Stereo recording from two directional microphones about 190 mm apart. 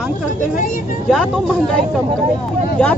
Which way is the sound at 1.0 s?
Centre (ahead or behind).